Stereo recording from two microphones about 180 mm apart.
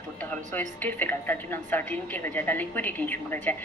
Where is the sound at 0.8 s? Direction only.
10° left (ahead or behind).